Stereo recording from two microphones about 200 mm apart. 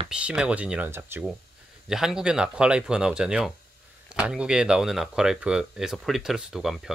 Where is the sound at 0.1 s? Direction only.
5° right (ahead or behind).